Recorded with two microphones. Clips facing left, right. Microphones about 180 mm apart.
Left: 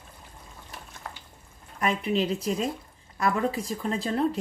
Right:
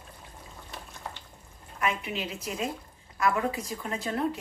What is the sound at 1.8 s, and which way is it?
Speech, 35° left (ahead or behind).